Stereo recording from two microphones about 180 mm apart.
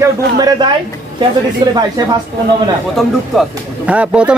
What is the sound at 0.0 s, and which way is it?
Speech, 20° right (ahead or behind).